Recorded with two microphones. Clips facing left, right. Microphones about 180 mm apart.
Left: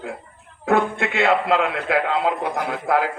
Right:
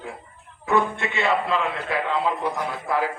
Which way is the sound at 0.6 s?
65° left (ahead or behind).